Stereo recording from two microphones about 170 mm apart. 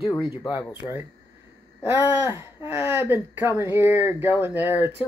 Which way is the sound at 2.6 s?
15° right (ahead or behind).